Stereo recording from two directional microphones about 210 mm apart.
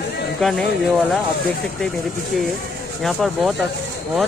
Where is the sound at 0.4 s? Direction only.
Centre (ahead or behind).